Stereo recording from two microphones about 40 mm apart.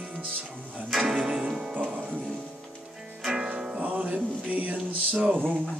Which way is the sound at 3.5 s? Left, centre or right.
Right.